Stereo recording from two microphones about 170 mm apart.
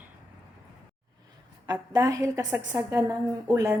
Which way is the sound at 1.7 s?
20° right (ahead or behind).